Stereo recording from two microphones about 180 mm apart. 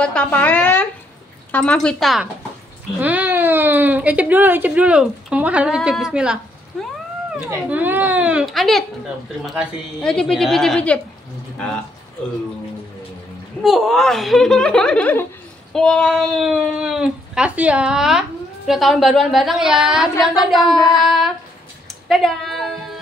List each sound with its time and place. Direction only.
0.0 s a child's voice: 5° left (ahead or behind)
10.0 s speech: 5° left (ahead or behind)
13.6 s speech: centre (ahead or behind)
20.7 s child singing: 20° left (ahead or behind)
22.0 s a sound: centre (ahead or behind)